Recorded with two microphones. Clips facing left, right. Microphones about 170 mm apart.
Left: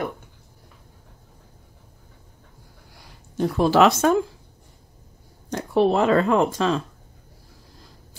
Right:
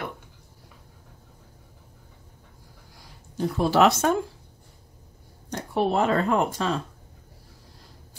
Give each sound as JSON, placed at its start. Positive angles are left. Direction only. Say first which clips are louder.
{"t": 3.3, "sound": "speech", "louder": "left 3 dB", "side_deg": 90}
{"t": 5.5, "sound": "speech", "louder": "left 5 dB", "side_deg": 90}